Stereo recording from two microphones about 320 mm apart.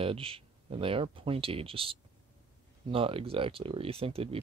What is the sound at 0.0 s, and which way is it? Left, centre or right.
Speech, centre.